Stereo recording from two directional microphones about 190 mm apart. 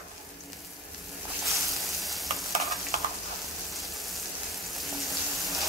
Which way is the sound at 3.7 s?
Centre (ahead or behind).